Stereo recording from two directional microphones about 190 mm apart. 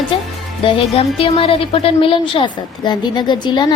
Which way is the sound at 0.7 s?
30° left (ahead or behind).